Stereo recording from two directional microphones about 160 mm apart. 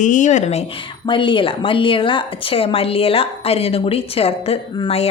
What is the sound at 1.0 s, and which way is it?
Speech, 30° left (ahead or behind).